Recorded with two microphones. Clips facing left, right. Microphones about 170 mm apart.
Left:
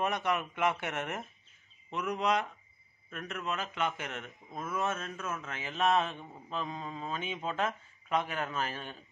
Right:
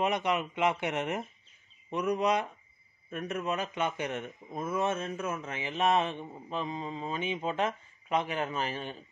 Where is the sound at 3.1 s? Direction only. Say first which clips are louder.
Right 5 dB; 20° right (ahead or behind).